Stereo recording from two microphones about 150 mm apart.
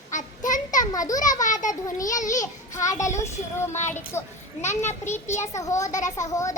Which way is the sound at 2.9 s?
20° left (ahead or behind).